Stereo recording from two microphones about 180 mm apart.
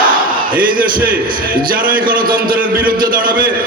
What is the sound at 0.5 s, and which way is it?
A man's voice, 50° right (ahead or behind).